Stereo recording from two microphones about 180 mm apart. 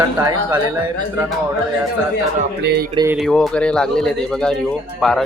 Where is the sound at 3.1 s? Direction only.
Centre (ahead or behind).